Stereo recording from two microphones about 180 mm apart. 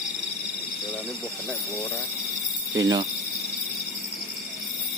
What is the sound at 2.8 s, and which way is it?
Speech, 20° right (ahead or behind).